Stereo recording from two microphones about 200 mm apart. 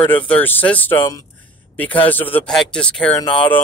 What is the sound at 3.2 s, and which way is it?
Speech, 25° left (ahead or behind).